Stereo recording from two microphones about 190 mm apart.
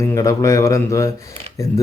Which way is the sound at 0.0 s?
15° left (ahead or behind).